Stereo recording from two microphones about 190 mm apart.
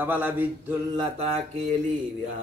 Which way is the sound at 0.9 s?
25° right (ahead or behind).